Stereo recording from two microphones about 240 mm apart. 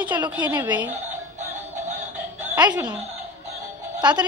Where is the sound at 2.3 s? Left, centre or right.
Centre.